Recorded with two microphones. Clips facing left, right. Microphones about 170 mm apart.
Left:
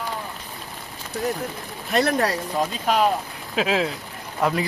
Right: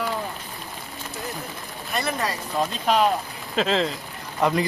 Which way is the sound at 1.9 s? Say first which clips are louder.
Left 6 dB; 70° left (ahead or behind).